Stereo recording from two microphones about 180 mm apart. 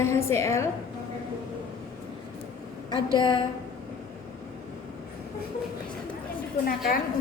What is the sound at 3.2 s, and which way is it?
Speech, 25° left (ahead or behind).